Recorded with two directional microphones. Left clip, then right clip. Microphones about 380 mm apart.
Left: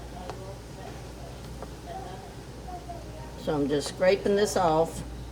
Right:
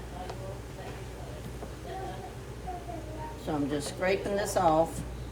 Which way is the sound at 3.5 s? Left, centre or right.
Left.